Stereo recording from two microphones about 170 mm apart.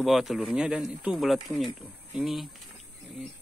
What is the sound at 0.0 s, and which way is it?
Speech, centre (ahead or behind).